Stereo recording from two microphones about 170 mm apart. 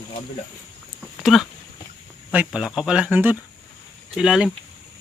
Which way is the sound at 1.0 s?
Centre (ahead or behind).